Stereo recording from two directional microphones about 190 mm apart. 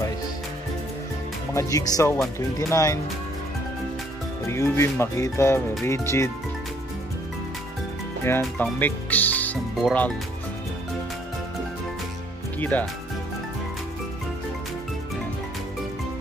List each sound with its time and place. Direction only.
1.5 s speech: 15° left (ahead or behind)
4.5 s speech: 15° left (ahead or behind)
8.2 s speech: 10° left (ahead or behind)
12.5 s speech: 10° left (ahead or behind)